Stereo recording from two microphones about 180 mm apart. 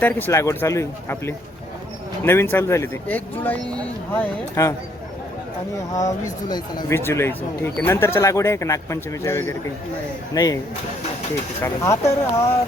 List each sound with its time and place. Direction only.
0.0 s speech: 15° left (ahead or behind)
5.9 s speech: 20° left (ahead or behind)
11.6 s speech: 15° left (ahead or behind)